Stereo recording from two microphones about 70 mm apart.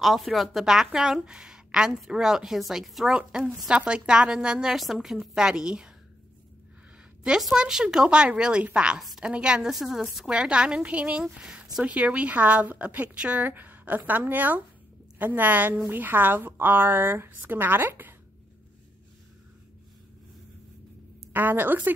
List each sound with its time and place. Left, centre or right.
0.0 s a woman's voice: centre
7.2 s a woman's voice: centre; by 18.1 s right
21.3 s a woman's voice: right